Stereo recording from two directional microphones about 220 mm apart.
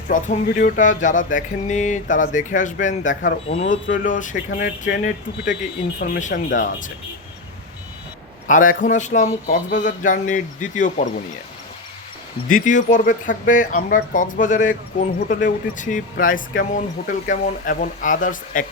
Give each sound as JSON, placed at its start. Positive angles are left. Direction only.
{"t": 0.1, "sound": "speech", "side_deg": 40}
{"t": 8.4, "sound": "speech", "side_deg": 35}
{"t": 12.5, "sound": "speech", "side_deg": 35}